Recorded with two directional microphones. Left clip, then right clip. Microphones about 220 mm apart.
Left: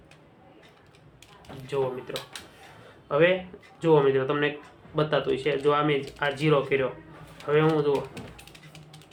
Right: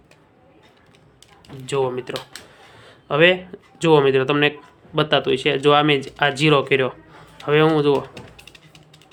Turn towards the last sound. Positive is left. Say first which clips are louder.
# right 7 dB
turn(degrees=-50)  # may be behind; listen again after turning